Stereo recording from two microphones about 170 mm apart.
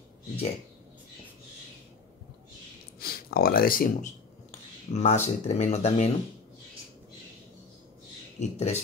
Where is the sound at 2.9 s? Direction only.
60° left (ahead or behind).